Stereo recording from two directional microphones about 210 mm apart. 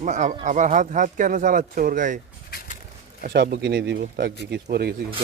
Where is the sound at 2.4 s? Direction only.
40° left (ahead or behind).